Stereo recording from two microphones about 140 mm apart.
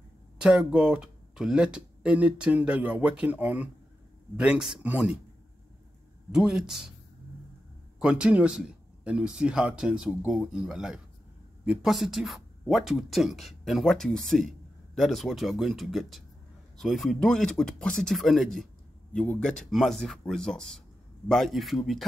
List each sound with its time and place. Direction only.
0.4 s speech: 5° right (ahead or behind)
6.3 s speech: 5° right (ahead or behind)
8.0 s speech: 5° right (ahead or behind)